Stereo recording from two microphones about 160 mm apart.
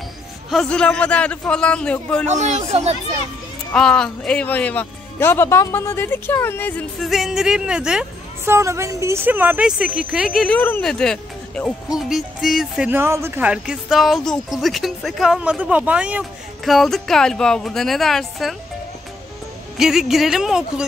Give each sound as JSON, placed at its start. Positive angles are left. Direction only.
{"t": 0.5, "sound": "speech", "side_deg": 5}
{"t": 2.2, "sound": "speech", "side_deg": -45}
{"t": 3.7, "sound": "speech", "side_deg": 5}
{"t": 7.0, "sound": "speech", "side_deg": 0}
{"t": 8.5, "sound": "speech", "side_deg": -15}
{"t": 19.8, "sound": "speech", "side_deg": -5}